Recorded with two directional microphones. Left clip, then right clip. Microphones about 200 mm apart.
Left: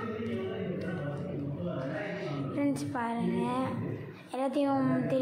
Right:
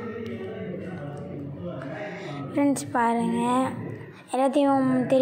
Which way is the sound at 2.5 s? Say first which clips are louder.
Right 10 dB; 30° right (ahead or behind).